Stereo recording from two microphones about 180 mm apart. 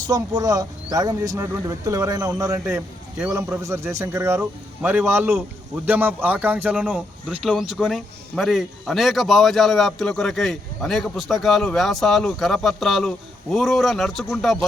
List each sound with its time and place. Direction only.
0.1 s speech: 20° right (ahead or behind); by 14.6 s centre (ahead or behind)